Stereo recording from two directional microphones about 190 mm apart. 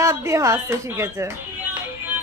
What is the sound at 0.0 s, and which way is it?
Speech, 15° right (ahead or behind).